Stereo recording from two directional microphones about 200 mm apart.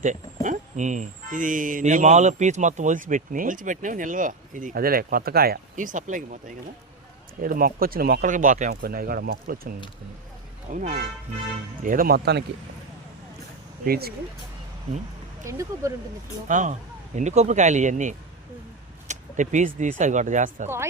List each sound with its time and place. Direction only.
0.4 s speech: 40° right (ahead or behind)
7.4 s speech: 45° right (ahead or behind)
13.8 s speech: 50° right (ahead or behind)
15.4 s speech: 15° right (ahead or behind)
16.5 s speech: 40° right (ahead or behind)